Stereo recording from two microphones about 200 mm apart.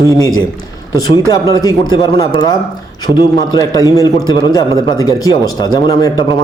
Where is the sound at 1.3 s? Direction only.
20° left (ahead or behind).